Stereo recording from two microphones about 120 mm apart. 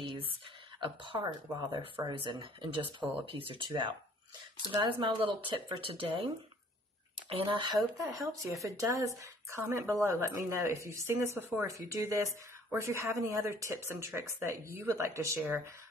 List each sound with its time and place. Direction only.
0.0 s a sound: 45° right (ahead or behind)
0.7 s speech: 40° right (ahead or behind)
8.0 s a woman's voice: 25° right (ahead or behind)